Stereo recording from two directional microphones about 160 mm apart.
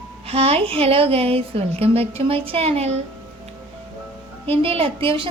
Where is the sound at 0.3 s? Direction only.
40° right (ahead or behind).